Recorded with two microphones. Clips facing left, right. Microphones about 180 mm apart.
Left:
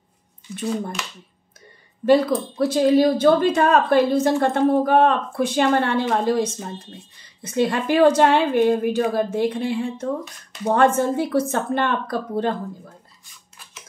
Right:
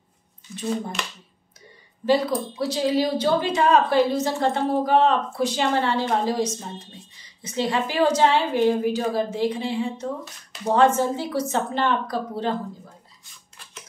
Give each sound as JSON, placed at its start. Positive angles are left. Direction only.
{"t": 2.0, "sound": "a woman's voice", "side_deg": 50}